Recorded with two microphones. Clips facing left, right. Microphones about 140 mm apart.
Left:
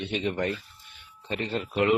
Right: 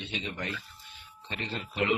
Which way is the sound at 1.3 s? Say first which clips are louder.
Left 7 dB; 40° left (ahead or behind).